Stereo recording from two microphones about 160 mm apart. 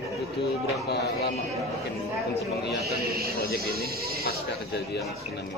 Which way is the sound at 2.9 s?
70° right (ahead or behind).